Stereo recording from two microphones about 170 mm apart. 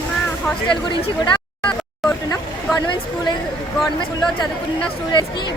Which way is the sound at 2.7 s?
25° left (ahead or behind).